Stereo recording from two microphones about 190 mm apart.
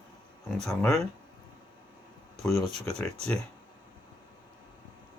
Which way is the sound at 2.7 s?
35° right (ahead or behind).